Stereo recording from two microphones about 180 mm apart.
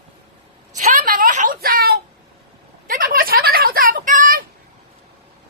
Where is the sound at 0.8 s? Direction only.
45° right (ahead or behind).